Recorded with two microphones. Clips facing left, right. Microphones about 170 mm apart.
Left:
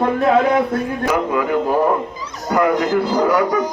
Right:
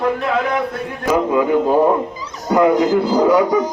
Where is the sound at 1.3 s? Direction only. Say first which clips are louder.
Right 3 dB; 20° right (ahead or behind).